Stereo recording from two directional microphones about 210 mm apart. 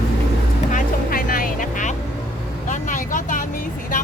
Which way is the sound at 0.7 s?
40° left (ahead or behind).